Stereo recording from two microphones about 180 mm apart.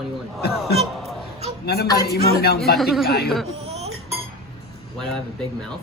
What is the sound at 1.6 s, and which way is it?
Speech, 60° left (ahead or behind).